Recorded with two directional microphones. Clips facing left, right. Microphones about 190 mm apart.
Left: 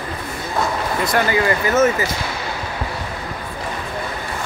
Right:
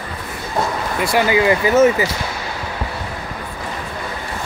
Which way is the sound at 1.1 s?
15° right (ahead or behind).